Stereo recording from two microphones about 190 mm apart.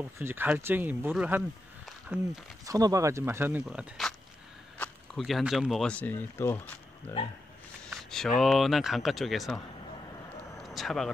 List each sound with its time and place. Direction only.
0.2 s speech: 10° right (ahead or behind)
2.6 s speech: 20° right (ahead or behind)
3.6 s speech: centre (ahead or behind)
7.9 s speech: centre (ahead or behind)
10.6 s a sound: centre (ahead or behind)